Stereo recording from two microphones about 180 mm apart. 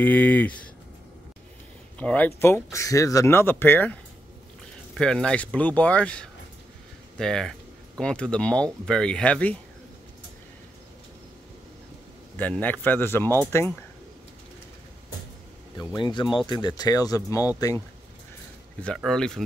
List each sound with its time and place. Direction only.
0.0 s speech: 10° left (ahead or behind)
2.0 s speech: 10° left (ahead or behind)
12.4 s speech: 10° left (ahead or behind)
15.8 s speech: 25° left (ahead or behind)
18.8 s speech: 5° left (ahead or behind)